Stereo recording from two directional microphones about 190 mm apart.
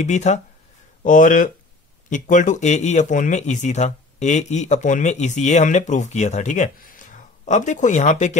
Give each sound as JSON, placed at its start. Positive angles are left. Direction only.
{"t": 0.0, "sound": "speech", "side_deg": 35}